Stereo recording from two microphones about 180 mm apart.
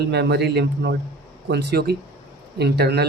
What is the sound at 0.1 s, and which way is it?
A man's voice, 65° right (ahead or behind).